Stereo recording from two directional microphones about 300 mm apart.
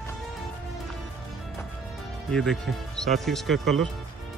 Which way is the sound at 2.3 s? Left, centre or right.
Centre.